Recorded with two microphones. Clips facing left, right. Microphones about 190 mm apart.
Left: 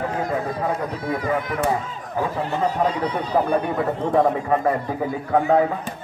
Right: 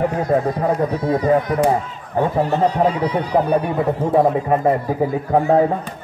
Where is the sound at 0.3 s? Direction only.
40° right (ahead or behind).